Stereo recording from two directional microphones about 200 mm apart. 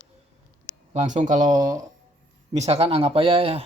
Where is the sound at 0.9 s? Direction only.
35° right (ahead or behind).